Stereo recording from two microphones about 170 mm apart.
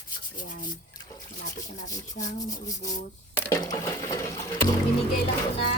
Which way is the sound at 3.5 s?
20° left (ahead or behind).